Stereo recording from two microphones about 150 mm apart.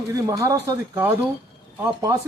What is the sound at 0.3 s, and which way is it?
A man's voice, 20° right (ahead or behind).